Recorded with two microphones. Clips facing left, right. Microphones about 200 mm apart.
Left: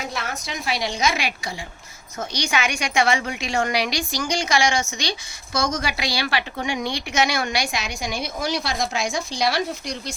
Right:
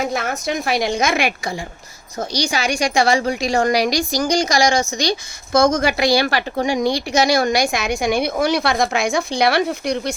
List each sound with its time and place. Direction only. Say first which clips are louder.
0.0 s a woman's voice: right 8 dB; 50° right (ahead or behind)
2.1 s a woman's voice: right 4 dB; 35° right (ahead or behind); by 10.2 s 60° right (ahead or behind)